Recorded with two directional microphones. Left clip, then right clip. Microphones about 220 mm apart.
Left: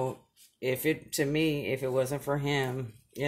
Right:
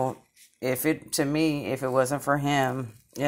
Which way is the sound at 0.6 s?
60° right (ahead or behind).